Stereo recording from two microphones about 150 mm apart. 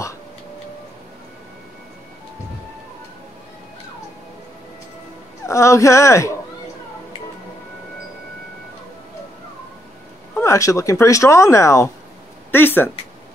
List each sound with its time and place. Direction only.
5.5 s speech: 20° left (ahead or behind)
10.4 s speech: 20° left (ahead or behind)